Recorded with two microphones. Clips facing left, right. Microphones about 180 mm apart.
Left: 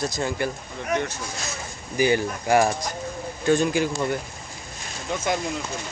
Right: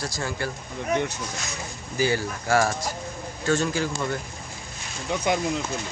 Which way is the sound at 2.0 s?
20° left (ahead or behind).